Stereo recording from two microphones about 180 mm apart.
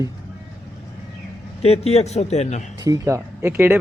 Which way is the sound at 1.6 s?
35° left (ahead or behind).